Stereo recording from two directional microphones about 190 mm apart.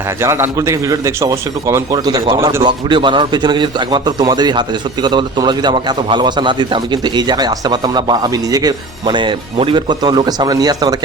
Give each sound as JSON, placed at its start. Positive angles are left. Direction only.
{"t": 0.2, "sound": "a man's voice", "side_deg": -15}